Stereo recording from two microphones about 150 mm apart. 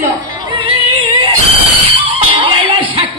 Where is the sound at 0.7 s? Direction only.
35° right (ahead or behind).